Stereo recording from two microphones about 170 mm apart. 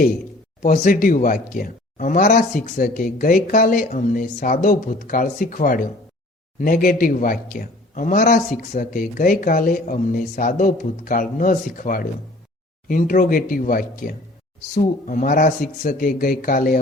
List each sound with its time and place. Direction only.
0.6 s a man's voice: 50° left (ahead or behind)